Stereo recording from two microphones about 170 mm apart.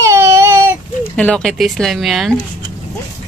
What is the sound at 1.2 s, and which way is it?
Speech, 5° left (ahead or behind).